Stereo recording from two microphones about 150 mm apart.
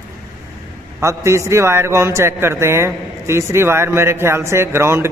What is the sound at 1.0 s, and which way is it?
A man's voice, 20° right (ahead or behind).